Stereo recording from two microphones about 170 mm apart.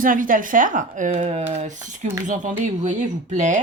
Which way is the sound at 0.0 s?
55° right (ahead or behind).